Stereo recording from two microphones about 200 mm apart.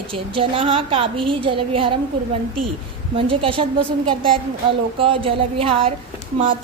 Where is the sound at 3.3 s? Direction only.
25° right (ahead or behind).